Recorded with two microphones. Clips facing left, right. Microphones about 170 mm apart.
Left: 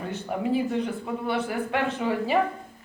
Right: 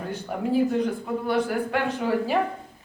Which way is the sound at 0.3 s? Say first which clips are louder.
Right 3 dB; centre (ahead or behind).